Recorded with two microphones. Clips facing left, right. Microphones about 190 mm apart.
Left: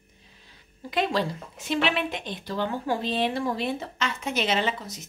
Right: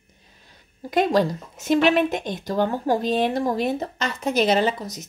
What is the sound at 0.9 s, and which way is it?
Speech, 45° right (ahead or behind).